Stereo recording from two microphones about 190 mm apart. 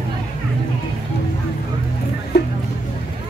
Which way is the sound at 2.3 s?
60° left (ahead or behind).